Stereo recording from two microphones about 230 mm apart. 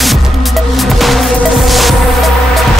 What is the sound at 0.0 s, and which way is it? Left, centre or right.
Music, centre.